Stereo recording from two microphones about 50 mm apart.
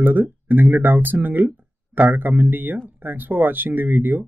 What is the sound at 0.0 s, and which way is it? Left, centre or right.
Speech, right.